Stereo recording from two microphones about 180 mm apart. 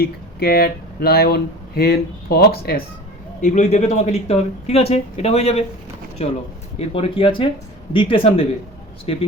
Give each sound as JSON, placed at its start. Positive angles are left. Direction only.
{"t": 0.0, "sound": "speech", "side_deg": 60}
{"t": 3.4, "sound": "speech", "side_deg": 40}